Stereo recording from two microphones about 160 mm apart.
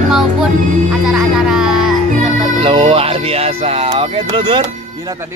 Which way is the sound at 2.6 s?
35° right (ahead or behind).